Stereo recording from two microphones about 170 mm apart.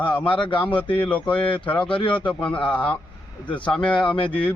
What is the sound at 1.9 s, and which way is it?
Speech, 30° left (ahead or behind).